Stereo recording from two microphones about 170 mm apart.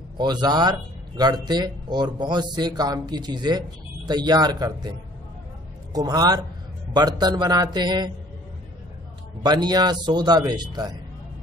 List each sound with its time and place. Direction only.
0.2 s speech: 25° right (ahead or behind)
5.9 s speech: 20° right (ahead or behind)
9.4 s speech: 25° right (ahead or behind)